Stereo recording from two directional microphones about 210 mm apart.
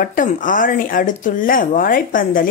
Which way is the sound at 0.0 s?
40° left (ahead or behind).